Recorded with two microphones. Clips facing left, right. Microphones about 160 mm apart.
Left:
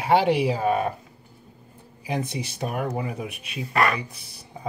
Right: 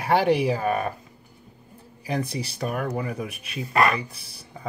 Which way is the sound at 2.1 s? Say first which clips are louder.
Right 1 dB; 20° left (ahead or behind).